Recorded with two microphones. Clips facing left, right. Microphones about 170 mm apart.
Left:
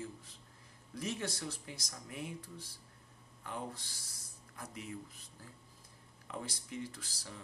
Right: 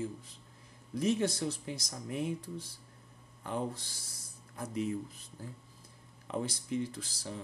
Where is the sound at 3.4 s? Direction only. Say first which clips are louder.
Right 7 dB; 30° right (ahead or behind).